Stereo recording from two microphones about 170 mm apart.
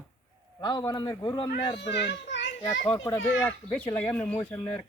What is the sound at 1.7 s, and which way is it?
A child's voice, 85° left.